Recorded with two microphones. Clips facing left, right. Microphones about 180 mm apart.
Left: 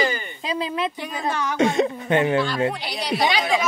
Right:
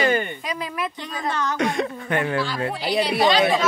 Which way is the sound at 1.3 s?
10° left (ahead or behind).